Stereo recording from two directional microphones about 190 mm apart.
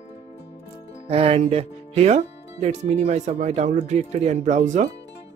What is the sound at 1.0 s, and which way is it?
Speech, 30° right (ahead or behind).